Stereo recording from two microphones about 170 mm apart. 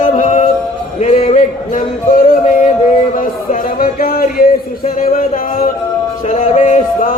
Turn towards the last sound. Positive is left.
turn(degrees=45)  # may be behind; listen again after turning